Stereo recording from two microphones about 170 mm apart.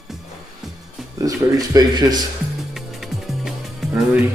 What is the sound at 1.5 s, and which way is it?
Speech, 25° right (ahead or behind).